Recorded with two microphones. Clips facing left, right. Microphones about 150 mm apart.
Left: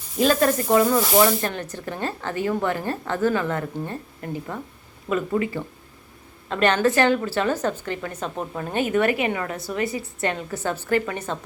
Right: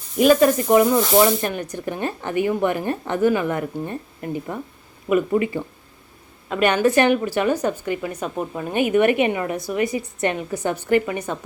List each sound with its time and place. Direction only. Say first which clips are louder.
0.2 s a woman's voice: right 5 dB; 15° right (ahead or behind)
0.9 s speech: right 2 dB; 5° left (ahead or behind)
1.2 s a woman's voice: right 2 dB; 15° right (ahead or behind)